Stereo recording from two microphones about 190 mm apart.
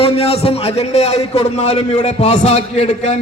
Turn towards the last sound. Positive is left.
turn(degrees=35)  # may be behind; listen again after turning